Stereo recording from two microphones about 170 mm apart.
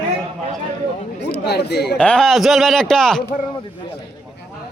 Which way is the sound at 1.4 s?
75° left (ahead or behind).